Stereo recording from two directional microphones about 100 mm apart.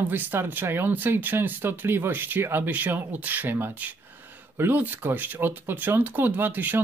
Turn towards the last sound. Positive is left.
turn(degrees=-20)  # may be behind; listen again after turning